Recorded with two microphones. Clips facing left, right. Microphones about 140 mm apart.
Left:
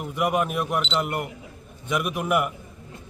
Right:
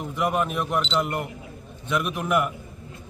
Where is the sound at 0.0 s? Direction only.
10° left (ahead or behind).